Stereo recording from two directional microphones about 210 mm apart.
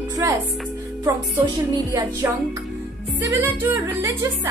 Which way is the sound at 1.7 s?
15° right (ahead or behind).